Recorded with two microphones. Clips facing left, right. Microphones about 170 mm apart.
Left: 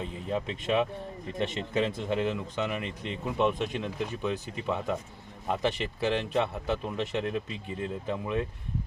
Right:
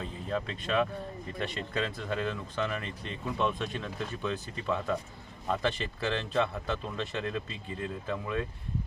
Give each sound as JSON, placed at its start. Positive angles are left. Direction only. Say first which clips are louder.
{"t": 0.0, "sound": "speech", "louder": "left 2 dB", "side_deg": 20}